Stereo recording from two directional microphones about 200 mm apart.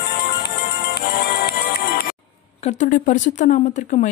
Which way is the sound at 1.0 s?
55° left (ahead or behind).